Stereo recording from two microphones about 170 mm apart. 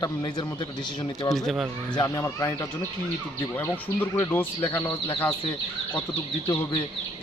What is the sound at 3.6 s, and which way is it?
Speech, 15° left (ahead or behind).